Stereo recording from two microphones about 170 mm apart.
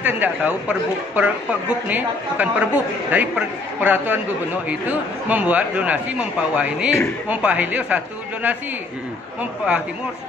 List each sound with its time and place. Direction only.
0.0 s speech: 10° right (ahead or behind)
5.3 s speech: 10° right (ahead or behind)